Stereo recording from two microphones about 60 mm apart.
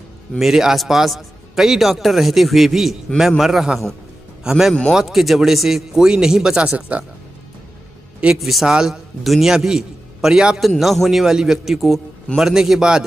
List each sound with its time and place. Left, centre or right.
0.4 s a man's voice: centre
6.9 s speech: right
8.4 s a man's voice: centre
8.7 s a man's voice: centre